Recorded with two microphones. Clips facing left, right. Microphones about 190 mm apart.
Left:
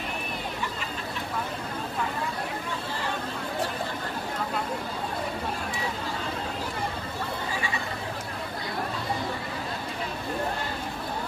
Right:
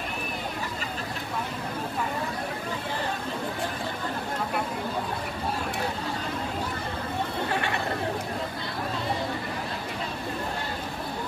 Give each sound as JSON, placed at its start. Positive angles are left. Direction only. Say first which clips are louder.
{"t": 7.4, "sound": "chatter", "louder": "right 3 dB", "side_deg": -65}